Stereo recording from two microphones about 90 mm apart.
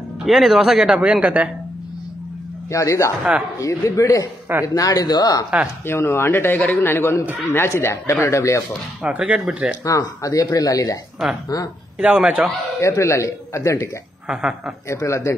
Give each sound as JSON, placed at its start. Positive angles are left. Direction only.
{"t": 0.2, "sound": "speech", "side_deg": 0}
{"t": 2.7, "sound": "speech", "side_deg": 35}
{"t": 5.9, "sound": "a man's voice", "side_deg": 30}
{"t": 9.0, "sound": "speech", "side_deg": -15}
{"t": 9.8, "sound": "speech", "side_deg": 40}
{"t": 12.0, "sound": "speech", "side_deg": -15}
{"t": 12.8, "sound": "speech", "side_deg": 35}
{"t": 14.2, "sound": "a woman's voice", "side_deg": -5}
{"t": 14.9, "sound": "speech", "side_deg": 35}